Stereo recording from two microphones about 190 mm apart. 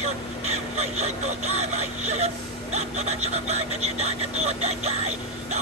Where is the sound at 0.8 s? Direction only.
35° right (ahead or behind).